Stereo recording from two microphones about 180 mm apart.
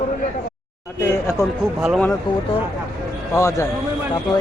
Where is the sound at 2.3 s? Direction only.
25° left (ahead or behind).